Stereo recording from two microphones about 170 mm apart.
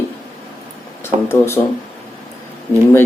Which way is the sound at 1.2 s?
15° left (ahead or behind).